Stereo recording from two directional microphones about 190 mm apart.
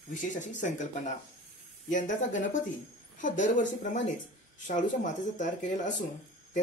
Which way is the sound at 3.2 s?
40° left (ahead or behind).